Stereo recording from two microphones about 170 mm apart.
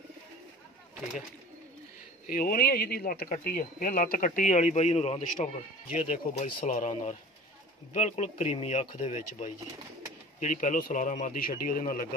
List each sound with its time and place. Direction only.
2.2 s speech: 60° left (ahead or behind)